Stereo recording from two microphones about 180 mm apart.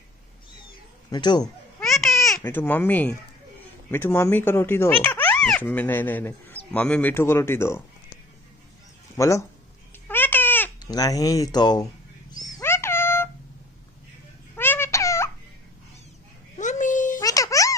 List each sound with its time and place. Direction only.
1.1 s speech: 25° left (ahead or behind)
2.3 s speech: 10° left (ahead or behind)
9.1 s speech: 15° left (ahead or behind)
10.0 s babbling: 10° left (ahead or behind)
10.8 s speech: 20° left (ahead or behind)
12.3 s cat: 20° left (ahead or behind)
14.5 s a sound: 10° left (ahead or behind)
16.5 s a sound: 45° left (ahead or behind)
17.2 s music: 20° left (ahead or behind)